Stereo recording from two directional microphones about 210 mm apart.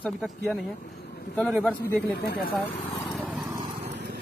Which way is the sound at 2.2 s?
45° left (ahead or behind).